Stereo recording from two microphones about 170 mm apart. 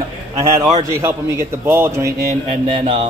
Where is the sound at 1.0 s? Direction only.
15° right (ahead or behind).